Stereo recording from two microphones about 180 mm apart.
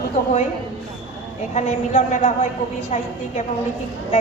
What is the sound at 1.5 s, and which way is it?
A woman's voice, 40° left (ahead or behind).